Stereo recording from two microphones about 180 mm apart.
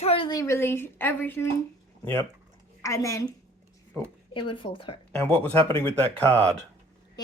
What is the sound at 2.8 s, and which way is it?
Speech, 15° left (ahead or behind).